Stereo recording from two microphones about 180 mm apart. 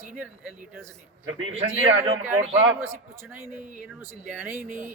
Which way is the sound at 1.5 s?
30° right (ahead or behind).